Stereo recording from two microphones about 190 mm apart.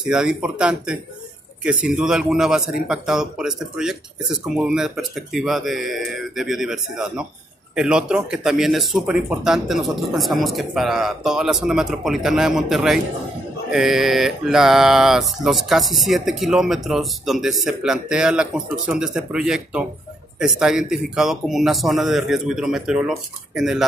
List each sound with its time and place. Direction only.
0.0 s speech: 5° right (ahead or behind)